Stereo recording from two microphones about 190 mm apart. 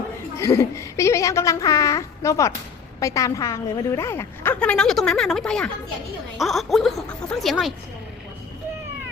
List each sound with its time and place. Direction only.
0.3 s a woman's voice: 15° left (ahead or behind)